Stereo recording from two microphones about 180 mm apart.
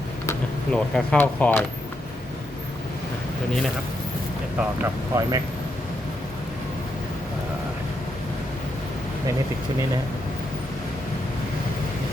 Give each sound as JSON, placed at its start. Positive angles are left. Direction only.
{"t": 0.3, "sound": "speech", "side_deg": 5}
{"t": 4.8, "sound": "speech", "side_deg": -15}